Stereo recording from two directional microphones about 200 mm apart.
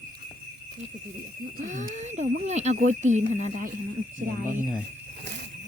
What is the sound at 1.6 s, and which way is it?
Speech, 40° right (ahead or behind).